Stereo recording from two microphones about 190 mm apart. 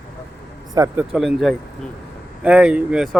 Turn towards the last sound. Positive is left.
turn(degrees=0)  # may be behind; listen again after turning